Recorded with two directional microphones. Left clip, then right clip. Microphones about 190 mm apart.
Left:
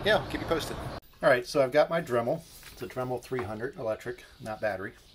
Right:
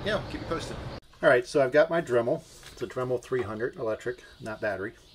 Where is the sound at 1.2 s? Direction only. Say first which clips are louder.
Right 2 dB; 25° left (ahead or behind).